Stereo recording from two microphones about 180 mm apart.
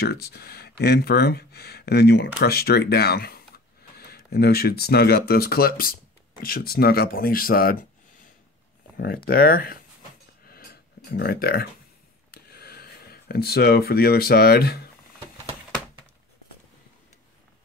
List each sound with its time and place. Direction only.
0.0 s speech: 60° left (ahead or behind)
8.9 s speech: 60° left (ahead or behind)
10.4 s a sound: 55° left (ahead or behind)
11.1 s speech: 60° left (ahead or behind)